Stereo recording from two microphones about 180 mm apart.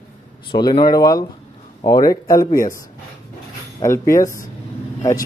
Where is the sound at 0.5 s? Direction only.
25° left (ahead or behind).